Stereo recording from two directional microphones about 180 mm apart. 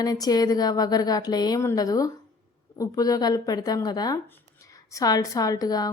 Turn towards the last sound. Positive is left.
turn(degrees=20)  # may be behind; listen again after turning